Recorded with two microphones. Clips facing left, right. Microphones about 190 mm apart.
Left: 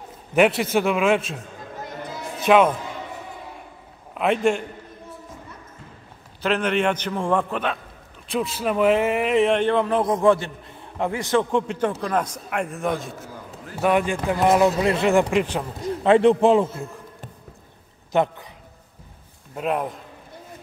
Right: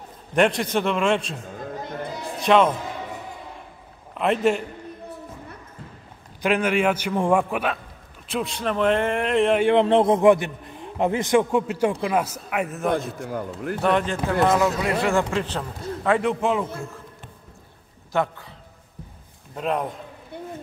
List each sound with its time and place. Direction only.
0.3 s speech: 5° left (ahead or behind)
2.4 s speech: 5° left (ahead or behind)
4.1 s a man's voice: centre (ahead or behind)
6.4 s a man's voice: 10° right (ahead or behind)
9.7 s a man's voice: 25° right (ahead or behind); by 14.2 s 10° left (ahead or behind)
14.4 s a man's voice: 25° left (ahead or behind)
18.1 s a man's voice: 20° left (ahead or behind)
19.5 s speech: 5° left (ahead or behind)